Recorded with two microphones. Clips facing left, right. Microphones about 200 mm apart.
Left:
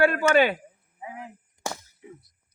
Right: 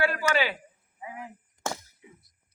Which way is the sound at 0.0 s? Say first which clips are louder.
Left 6 dB; 55° left (ahead or behind).